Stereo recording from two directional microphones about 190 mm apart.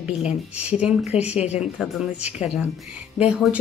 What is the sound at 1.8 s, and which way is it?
Speech, 5° right (ahead or behind).